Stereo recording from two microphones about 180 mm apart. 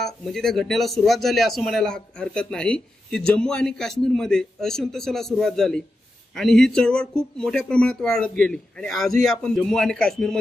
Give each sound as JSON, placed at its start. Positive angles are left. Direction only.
{"t": 0.0, "sound": "a man's voice", "side_deg": 0}